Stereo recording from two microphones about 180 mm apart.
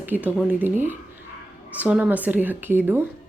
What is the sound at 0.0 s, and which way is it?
Speech, 10° right (ahead or behind).